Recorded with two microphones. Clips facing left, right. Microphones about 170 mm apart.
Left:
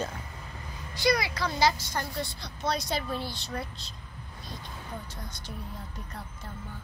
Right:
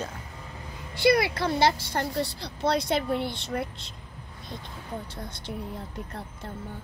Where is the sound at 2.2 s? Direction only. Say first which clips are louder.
Right 5 dB; 30° right (ahead or behind).